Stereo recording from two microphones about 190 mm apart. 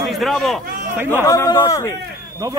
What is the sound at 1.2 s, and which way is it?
Speech, 15° left (ahead or behind).